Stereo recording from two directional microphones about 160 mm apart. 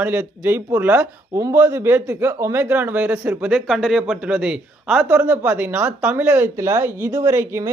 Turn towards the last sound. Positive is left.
turn(degrees=-15)  # may be behind; listen again after turning